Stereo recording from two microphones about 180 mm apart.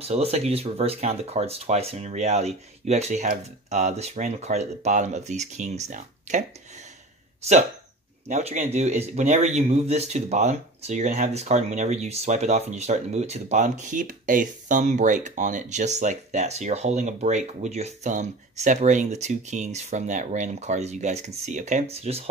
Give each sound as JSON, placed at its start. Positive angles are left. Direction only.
{"t": 0.0, "sound": "speech", "side_deg": -35}
{"t": 8.3, "sound": "speech", "side_deg": -40}